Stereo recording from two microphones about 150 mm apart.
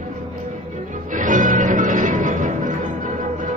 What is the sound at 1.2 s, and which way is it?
Music, 60° right (ahead or behind).